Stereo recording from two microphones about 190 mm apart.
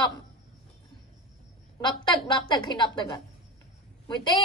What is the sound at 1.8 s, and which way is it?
A woman's voice, 25° left (ahead or behind).